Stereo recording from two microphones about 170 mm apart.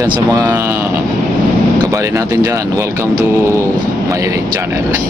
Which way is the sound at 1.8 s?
20° right (ahead or behind).